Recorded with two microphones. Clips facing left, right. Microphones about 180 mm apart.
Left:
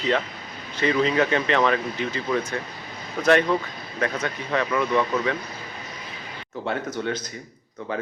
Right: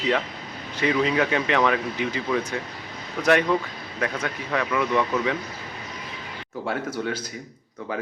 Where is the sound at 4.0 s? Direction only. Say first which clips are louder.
Left 1 dB; 5° right (ahead or behind).